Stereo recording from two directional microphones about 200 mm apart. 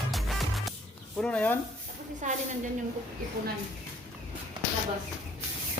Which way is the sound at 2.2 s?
35° right (ahead or behind).